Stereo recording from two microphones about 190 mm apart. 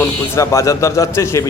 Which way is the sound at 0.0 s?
15° left (ahead or behind).